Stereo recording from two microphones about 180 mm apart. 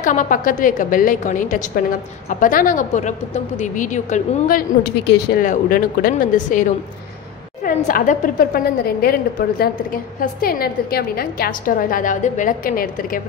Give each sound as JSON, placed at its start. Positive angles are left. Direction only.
{"t": 0.0, "sound": "a woman's voice", "side_deg": 45}